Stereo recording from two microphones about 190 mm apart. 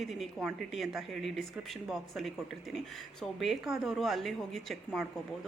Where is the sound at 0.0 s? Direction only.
Centre (ahead or behind).